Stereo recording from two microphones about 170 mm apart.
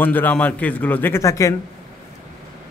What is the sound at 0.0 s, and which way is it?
A man's voice, 10° left (ahead or behind).